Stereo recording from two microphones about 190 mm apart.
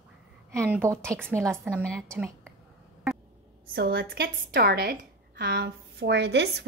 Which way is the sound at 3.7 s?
55° right (ahead or behind).